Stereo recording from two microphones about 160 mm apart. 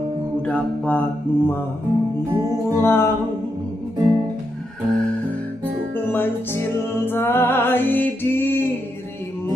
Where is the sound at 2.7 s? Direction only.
15° left (ahead or behind).